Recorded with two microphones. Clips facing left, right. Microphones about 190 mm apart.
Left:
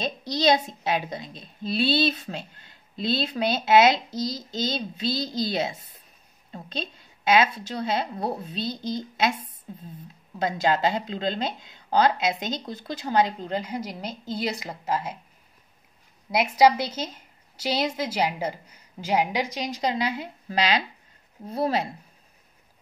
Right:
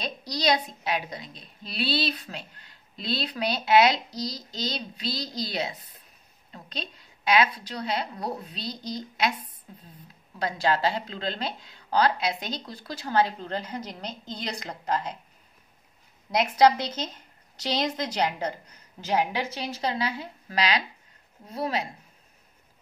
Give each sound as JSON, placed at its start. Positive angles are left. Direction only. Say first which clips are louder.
{"t": 0.0, "sound": "speech", "louder": "left 4 dB", "side_deg": 25}
{"t": 7.2, "sound": "speech", "louder": "left 2 dB", "side_deg": 25}
{"t": 16.3, "sound": "a woman's voice", "louder": "left 1 dB", "side_deg": 10}